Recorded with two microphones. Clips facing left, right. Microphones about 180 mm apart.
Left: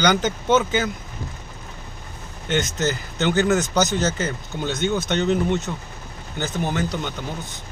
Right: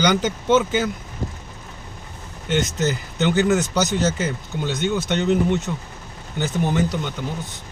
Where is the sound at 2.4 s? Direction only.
5° right (ahead or behind).